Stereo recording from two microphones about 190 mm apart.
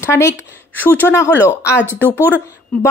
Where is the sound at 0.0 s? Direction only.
15° left (ahead or behind).